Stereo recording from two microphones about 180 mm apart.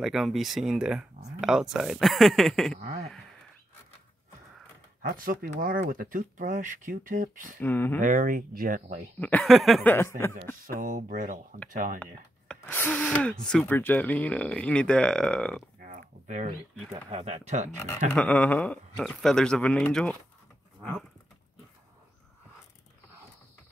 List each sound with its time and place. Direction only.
0.0 s speech: centre (ahead or behind)
2.8 s speech: 55° right (ahead or behind)
5.2 s speech: 50° right (ahead or behind)
7.6 s speech: 10° left (ahead or behind)
8.0 s speech: 45° right (ahead or behind)
9.2 s speech: 5° left (ahead or behind)
9.9 s speech: 15° left (ahead or behind)
10.3 s speech: 50° right (ahead or behind)
12.0 s speech: 10° left (ahead or behind)
15.8 s a sound: 45° right (ahead or behind)
16.4 s speech: 35° right (ahead or behind)
17.7 s speech: 5° left (ahead or behind)